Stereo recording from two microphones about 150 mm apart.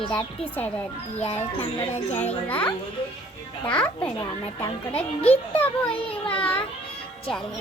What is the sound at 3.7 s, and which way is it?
A child's voice, 10° left (ahead or behind).